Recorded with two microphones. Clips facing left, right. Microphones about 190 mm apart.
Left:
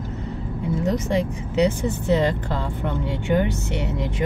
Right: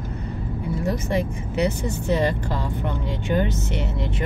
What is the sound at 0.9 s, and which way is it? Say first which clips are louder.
Speech: left 1 dB; 20° left (ahead or behind).